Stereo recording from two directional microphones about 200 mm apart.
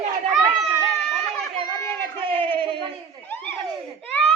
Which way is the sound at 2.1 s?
25° right (ahead or behind).